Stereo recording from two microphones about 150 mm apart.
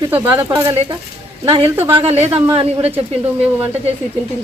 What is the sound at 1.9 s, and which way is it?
A woman's voice, 45° right (ahead or behind).